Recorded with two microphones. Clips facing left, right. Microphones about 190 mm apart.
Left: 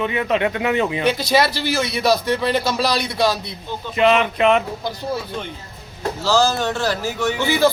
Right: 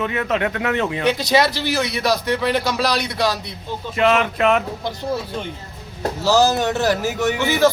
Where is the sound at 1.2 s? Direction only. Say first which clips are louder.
Even; 20° right (ahead or behind).